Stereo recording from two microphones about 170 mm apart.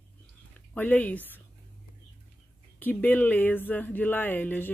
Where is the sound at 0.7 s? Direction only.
10° left (ahead or behind).